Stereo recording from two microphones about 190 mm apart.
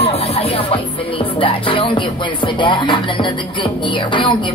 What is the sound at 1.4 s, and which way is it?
Music, 25° left (ahead or behind).